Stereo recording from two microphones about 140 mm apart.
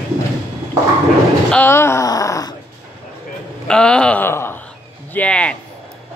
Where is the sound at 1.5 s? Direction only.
15° left (ahead or behind).